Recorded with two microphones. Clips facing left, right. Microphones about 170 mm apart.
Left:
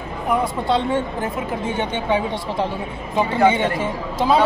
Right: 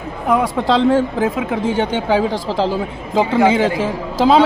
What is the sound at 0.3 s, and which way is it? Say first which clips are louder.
Speech: right 4 dB; 90° right.